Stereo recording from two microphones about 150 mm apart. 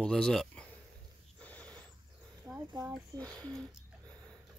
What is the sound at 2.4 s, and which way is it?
Speech, 10° right (ahead or behind).